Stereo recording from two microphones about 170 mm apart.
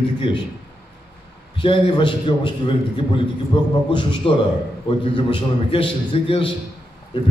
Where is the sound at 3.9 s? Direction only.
30° left (ahead or behind).